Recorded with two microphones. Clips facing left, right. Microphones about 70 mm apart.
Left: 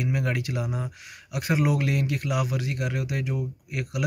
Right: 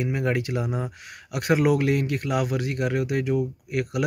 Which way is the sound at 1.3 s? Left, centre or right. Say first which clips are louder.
Right 4 dB; right.